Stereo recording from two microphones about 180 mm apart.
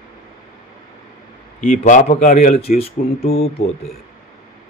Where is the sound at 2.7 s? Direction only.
35° left (ahead or behind).